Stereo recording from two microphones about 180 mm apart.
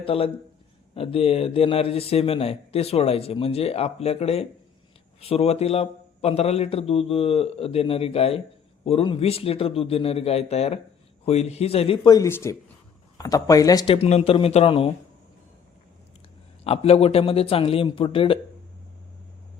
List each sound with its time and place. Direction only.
0.0 s a man's voice: 30° left (ahead or behind)
12.1 s speech: 15° left (ahead or behind)
13.9 s a man's voice: 35° left (ahead or behind)
16.6 s a man's voice: 35° left (ahead or behind)